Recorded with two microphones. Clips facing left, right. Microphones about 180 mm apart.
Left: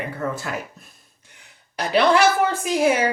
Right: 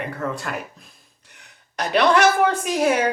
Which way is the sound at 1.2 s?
70° right (ahead or behind).